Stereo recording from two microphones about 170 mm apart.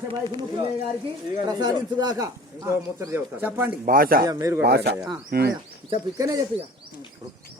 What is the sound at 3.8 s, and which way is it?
Speech, 55° right (ahead or behind).